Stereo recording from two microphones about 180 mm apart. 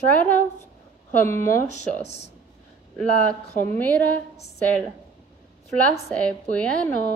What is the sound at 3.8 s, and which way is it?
Speech, 10° left (ahead or behind).